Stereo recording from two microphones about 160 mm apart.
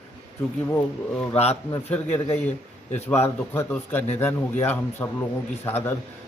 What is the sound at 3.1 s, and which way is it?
Speech, 15° left (ahead or behind).